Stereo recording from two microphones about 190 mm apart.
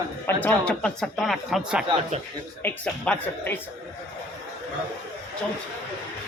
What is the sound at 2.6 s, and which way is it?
A man's voice, 10° left (ahead or behind).